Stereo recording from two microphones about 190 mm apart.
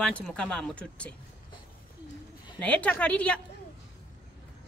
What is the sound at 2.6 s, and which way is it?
Speech, 5° left (ahead or behind).